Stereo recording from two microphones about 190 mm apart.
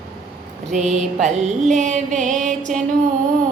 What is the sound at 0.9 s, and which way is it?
Music, 40° right (ahead or behind).